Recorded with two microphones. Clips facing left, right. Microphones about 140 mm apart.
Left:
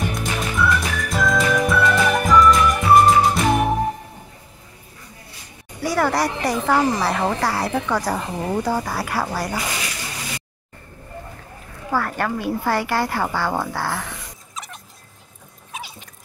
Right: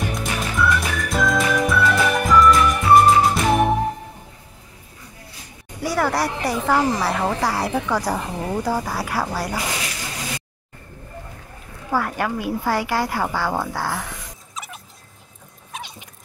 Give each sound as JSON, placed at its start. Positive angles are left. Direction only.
{"t": 0.1, "sound": "music", "side_deg": 0}
{"t": 5.8, "sound": "speech", "side_deg": 0}
{"t": 11.9, "sound": "speech", "side_deg": -10}
{"t": 14.5, "sound": "turkey", "side_deg": 0}
{"t": 15.7, "sound": "a sound", "side_deg": 5}